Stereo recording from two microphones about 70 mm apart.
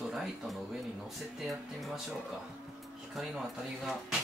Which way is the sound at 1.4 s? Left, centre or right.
Centre.